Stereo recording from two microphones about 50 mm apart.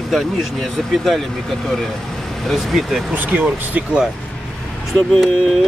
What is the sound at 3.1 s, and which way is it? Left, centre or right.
Speech, right.